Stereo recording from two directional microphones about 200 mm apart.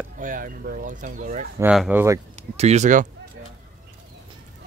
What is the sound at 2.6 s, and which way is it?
Speech, 35° right (ahead or behind).